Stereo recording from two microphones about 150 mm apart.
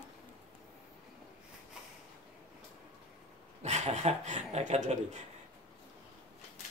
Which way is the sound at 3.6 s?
50° right (ahead or behind).